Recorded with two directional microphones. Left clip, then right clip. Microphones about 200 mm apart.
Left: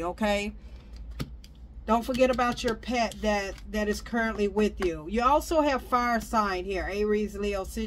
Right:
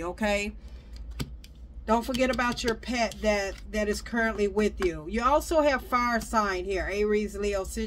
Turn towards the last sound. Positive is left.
turn(degrees=20)  # may be behind; listen again after turning